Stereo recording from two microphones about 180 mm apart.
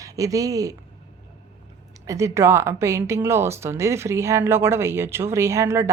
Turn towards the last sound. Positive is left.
turn(degrees=-15)  # may be behind; listen again after turning